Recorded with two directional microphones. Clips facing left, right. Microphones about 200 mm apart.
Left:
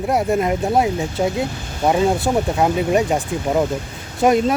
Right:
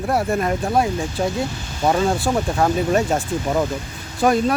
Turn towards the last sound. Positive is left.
turn(degrees=20)  # may be behind; listen again after turning